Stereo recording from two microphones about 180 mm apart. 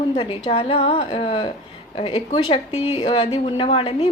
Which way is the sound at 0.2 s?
30° left (ahead or behind).